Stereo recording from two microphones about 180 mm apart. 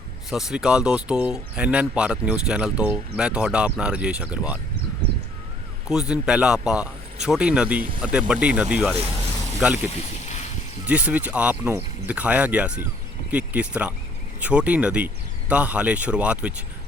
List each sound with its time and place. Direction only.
0.3 s speech: centre (ahead or behind)
5.9 s speech: 5° right (ahead or behind)
10.2 s a sound: 40° left (ahead or behind)
10.8 s speech: 10° right (ahead or behind)